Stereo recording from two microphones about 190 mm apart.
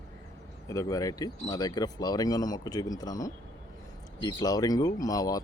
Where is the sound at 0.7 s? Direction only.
15° left (ahead or behind).